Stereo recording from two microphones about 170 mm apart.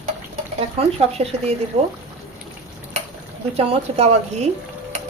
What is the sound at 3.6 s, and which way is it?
Speech, 40° right (ahead or behind).